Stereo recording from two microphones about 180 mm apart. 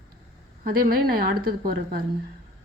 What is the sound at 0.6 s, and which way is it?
A woman's voice, 55° right (ahead or behind).